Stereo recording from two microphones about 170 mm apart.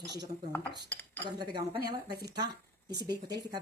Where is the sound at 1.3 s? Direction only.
25° right (ahead or behind).